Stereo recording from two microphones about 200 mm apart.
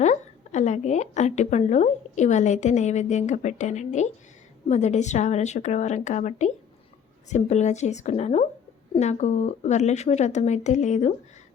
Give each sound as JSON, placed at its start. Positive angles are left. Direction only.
{"t": 0.0, "sound": "a woman's voice", "side_deg": 35}